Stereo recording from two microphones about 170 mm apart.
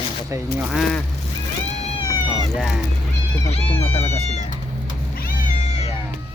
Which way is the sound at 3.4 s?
35° left (ahead or behind).